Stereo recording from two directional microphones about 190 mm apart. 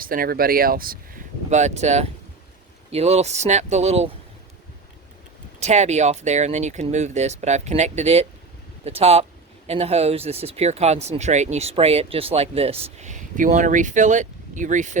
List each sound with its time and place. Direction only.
0.0 s speech: 50° right (ahead or behind)
1.5 s speech: 40° right (ahead or behind)
5.5 s speech: 35° right (ahead or behind)